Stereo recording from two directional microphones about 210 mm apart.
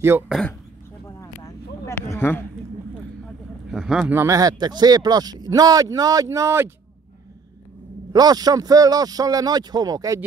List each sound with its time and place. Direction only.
0.3 s a man's voice: 5° left (ahead or behind)
1.0 s a sound: 15° left (ahead or behind)
3.7 s speech: centre (ahead or behind)
8.1 s speech: 20° right (ahead or behind)